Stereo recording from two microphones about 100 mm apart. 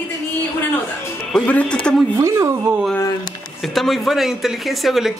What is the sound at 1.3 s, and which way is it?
Speech, 10° left (ahead or behind).